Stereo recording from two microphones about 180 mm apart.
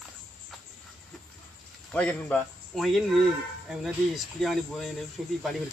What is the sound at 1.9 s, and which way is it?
Speech, 5° left (ahead or behind).